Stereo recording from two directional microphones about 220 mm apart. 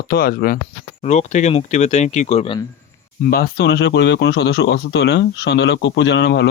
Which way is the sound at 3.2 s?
45° left (ahead or behind).